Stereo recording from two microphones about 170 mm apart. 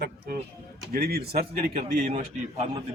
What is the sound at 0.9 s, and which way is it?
Speech, 65° right (ahead or behind).